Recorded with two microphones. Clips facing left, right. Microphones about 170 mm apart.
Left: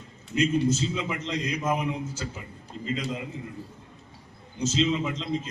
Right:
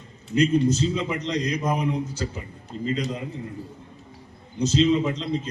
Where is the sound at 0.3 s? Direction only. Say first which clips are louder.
Right 4 dB; 35° right (ahead or behind).